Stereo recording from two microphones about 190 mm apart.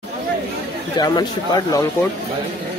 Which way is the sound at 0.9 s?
20° left (ahead or behind).